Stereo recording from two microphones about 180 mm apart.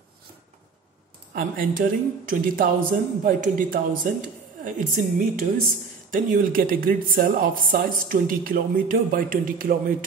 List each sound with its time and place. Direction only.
1.3 s speech: 50° right (ahead or behind)